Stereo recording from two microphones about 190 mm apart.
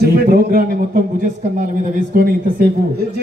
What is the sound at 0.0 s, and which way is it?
A man's voice, 50° right (ahead or behind).